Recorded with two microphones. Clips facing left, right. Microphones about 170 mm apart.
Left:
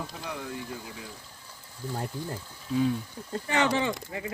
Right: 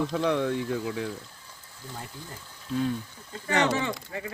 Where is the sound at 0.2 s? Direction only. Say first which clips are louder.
Right 11 dB; 90° right.